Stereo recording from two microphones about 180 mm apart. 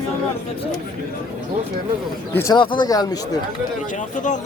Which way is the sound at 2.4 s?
25° left (ahead or behind).